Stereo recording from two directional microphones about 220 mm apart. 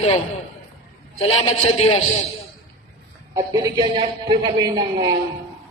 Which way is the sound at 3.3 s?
15° right (ahead or behind).